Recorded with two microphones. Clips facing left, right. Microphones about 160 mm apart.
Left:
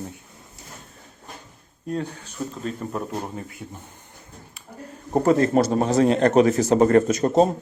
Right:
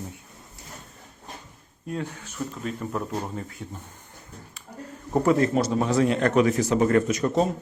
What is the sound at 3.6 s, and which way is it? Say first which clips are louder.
Speech: even; 10° left (ahead or behind).